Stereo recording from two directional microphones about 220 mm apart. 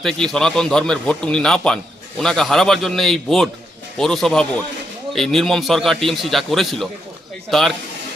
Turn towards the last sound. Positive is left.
turn(degrees=0)  # may be behind; listen again after turning